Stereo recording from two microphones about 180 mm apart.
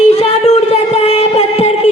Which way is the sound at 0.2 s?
35° left (ahead or behind).